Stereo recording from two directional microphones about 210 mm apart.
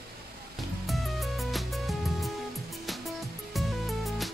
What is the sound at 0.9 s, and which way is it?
Music, centre (ahead or behind).